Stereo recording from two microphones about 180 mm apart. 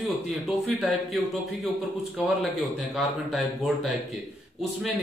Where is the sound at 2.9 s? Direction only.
Centre (ahead or behind).